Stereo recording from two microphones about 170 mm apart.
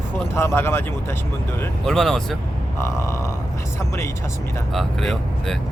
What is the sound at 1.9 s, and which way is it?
Speech, centre (ahead or behind).